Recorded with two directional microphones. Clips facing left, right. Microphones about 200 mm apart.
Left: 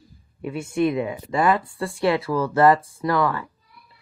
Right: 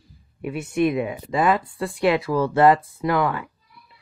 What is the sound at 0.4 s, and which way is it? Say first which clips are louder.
Speech: right 1 dB; 20° right (ahead or behind).